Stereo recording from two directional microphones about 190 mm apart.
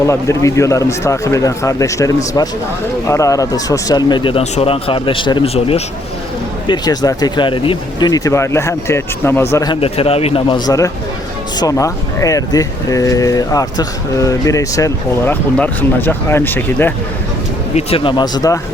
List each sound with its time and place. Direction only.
0.1 s speech: 15° left (ahead or behind)
6.7 s speech: 20° left (ahead or behind)
9.8 s speech: 30° left (ahead or behind); by 16.9 s 10° left (ahead or behind)
17.7 s speech: 30° left (ahead or behind)